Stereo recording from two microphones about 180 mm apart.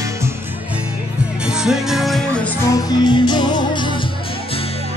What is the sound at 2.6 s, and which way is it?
Music, 20° left (ahead or behind).